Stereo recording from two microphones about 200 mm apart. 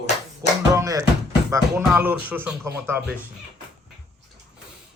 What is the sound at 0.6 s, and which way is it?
Speech, 15° right (ahead or behind).